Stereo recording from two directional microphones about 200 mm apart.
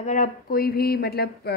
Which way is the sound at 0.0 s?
40° left (ahead or behind).